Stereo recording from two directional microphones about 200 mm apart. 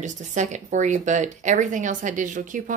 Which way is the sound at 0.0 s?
35° right (ahead or behind).